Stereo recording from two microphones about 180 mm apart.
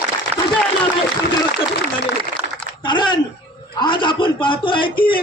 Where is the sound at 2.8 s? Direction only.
25° left (ahead or behind).